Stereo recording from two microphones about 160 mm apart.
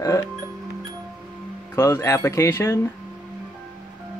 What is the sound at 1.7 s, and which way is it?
Speech, 15° left (ahead or behind).